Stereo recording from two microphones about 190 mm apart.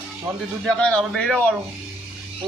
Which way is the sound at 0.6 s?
5° left (ahead or behind).